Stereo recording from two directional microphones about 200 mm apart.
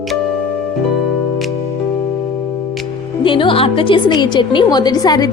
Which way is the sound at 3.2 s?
25° left (ahead or behind).